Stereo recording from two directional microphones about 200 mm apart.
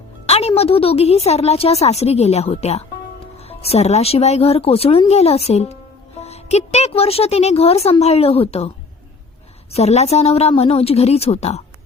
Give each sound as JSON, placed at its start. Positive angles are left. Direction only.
{"t": 0.3, "sound": "a woman's voice", "side_deg": 30}
{"t": 9.7, "sound": "a woman's voice", "side_deg": 35}